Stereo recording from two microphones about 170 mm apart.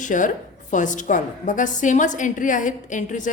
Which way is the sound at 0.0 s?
50° left (ahead or behind).